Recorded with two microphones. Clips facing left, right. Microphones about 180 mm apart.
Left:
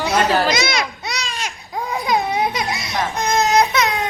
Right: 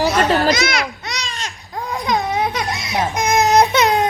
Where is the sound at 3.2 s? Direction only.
15° right (ahead or behind).